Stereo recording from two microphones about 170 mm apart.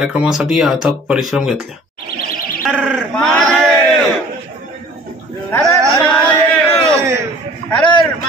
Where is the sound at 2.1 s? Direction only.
60° left (ahead or behind).